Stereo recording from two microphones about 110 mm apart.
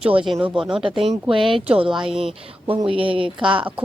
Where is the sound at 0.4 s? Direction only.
5° right (ahead or behind).